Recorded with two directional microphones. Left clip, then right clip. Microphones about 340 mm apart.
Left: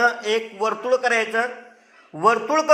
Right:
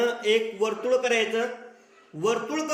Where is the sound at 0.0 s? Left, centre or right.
Left.